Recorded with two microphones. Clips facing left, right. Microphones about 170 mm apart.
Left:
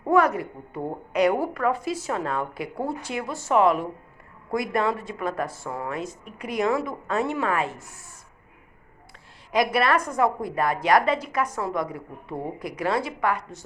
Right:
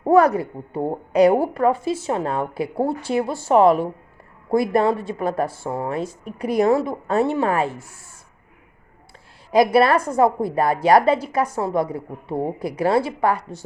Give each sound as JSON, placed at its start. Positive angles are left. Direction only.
{"t": 0.0, "sound": "a woman's voice", "side_deg": -35}
{"t": 9.5, "sound": "a woman's voice", "side_deg": -30}